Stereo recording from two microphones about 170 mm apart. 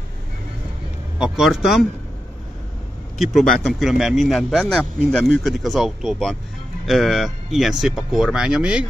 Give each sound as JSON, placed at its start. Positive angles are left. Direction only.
{"t": 1.2, "sound": "speech", "side_deg": 0}
{"t": 3.2, "sound": "speech", "side_deg": 0}